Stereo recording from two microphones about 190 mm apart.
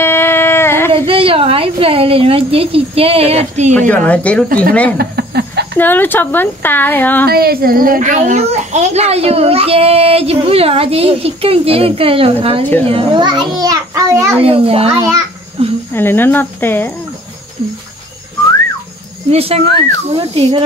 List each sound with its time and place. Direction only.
0.0 s a sound: 10° left (ahead or behind)
0.9 s a woman's voice: 30° right (ahead or behind)
3.9 s a woman's voice: 10° left (ahead or behind)
4.9 s a sound: 60° right (ahead or behind)
5.8 s a woman's voice: 10° left (ahead or behind)
7.2 s a child's voice: 55° right (ahead or behind); by 14.4 s 15° right (ahead or behind)
14.4 s a child's voice: 30° right (ahead or behind)
15.0 s a child's voice: 15° right (ahead or behind)
15.6 s cricket: 30° right (ahead or behind)
15.9 s a woman's voice: 10° left (ahead or behind)
19.3 s a child's voice: 30° right (ahead or behind)